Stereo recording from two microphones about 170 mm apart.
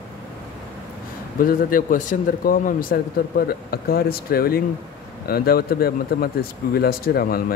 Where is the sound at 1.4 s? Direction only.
55° left (ahead or behind).